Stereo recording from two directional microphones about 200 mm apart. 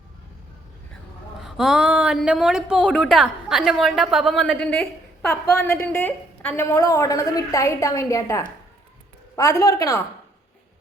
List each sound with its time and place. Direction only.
1.4 s a woman's voice: centre (ahead or behind); by 10.0 s 15° left (ahead or behind)